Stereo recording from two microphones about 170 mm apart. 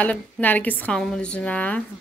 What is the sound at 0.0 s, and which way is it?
Speech, 10° left (ahead or behind).